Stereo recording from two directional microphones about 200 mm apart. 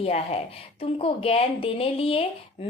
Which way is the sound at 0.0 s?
30° left (ahead or behind).